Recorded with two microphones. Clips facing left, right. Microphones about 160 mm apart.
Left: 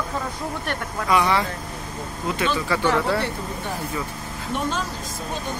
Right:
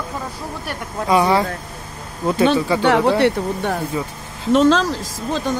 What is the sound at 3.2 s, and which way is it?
Speech, 65° right (ahead or behind).